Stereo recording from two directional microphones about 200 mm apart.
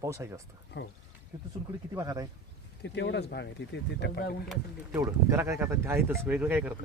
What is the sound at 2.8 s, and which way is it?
Speech, 60° left (ahead or behind).